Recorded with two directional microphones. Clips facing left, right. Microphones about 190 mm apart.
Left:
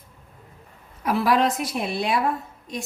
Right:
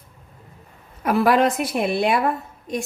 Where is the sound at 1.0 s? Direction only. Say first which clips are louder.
Right 3 dB; 55° right (ahead or behind).